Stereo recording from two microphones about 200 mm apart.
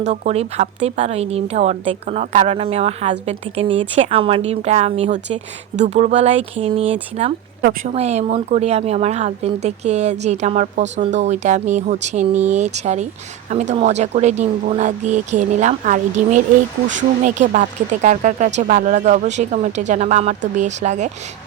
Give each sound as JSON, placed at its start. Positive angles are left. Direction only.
{"t": 0.1, "sound": "speech", "side_deg": -35}
{"t": 7.6, "sound": "speech", "side_deg": -45}
{"t": 7.9, "sound": "speech", "side_deg": -35}